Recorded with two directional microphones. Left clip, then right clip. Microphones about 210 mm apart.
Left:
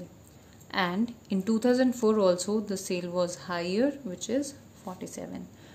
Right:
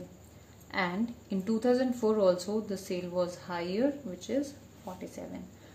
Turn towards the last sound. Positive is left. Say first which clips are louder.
# left 3 dB
turn(degrees=35)  # may be behind; listen again after turning